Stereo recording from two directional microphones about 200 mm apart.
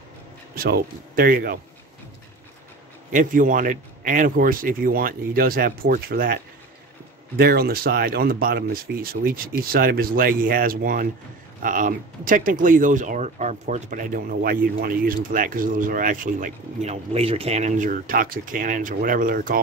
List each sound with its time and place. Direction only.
0.6 s speech: 50° right (ahead or behind)
3.1 s speech: 40° right (ahead or behind)